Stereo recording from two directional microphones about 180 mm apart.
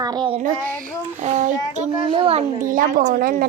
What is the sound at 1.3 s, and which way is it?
A child's voice, 40° right (ahead or behind).